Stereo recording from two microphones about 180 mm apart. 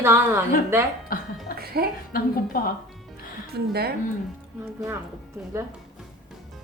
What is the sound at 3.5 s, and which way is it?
Speech, 65° right (ahead or behind).